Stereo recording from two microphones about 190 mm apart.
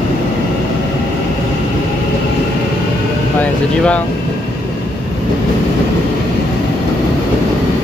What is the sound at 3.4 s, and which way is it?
Speech, 5° left (ahead or behind).